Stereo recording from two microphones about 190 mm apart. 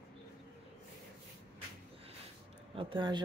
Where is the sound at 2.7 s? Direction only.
25° right (ahead or behind).